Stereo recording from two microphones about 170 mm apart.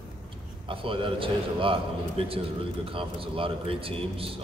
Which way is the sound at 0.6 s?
30° right (ahead or behind).